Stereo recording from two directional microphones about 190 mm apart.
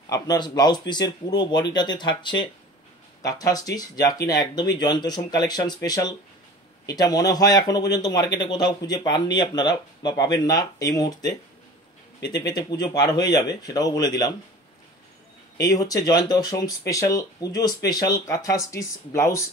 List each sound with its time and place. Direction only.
0.1 s speech: 20° left (ahead or behind)
15.6 s speech: 20° left (ahead or behind)